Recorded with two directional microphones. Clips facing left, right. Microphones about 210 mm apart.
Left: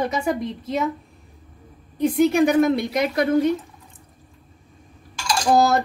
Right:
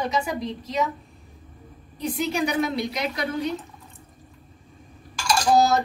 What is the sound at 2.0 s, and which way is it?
A woman's voice, 55° left (ahead or behind).